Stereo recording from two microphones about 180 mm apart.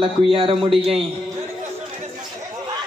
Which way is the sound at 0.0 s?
30° right (ahead or behind).